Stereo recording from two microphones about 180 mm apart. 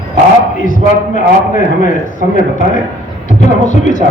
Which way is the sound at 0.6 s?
45° left (ahead or behind).